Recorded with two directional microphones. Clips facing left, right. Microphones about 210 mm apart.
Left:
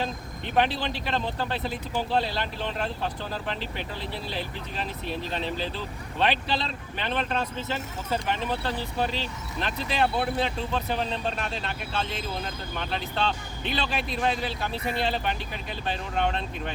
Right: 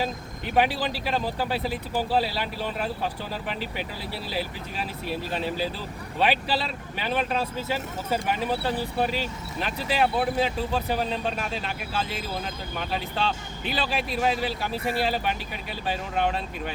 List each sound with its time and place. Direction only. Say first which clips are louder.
0.0 s speech: right 2 dB; 10° right (ahead or behind)